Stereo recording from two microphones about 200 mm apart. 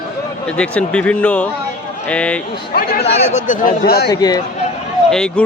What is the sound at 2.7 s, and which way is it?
Speech, 45° left (ahead or behind).